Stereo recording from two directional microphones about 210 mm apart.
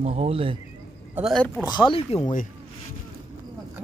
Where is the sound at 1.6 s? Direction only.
20° left (ahead or behind).